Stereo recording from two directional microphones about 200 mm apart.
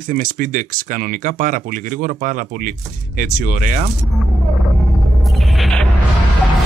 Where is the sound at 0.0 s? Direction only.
40° right (ahead or behind).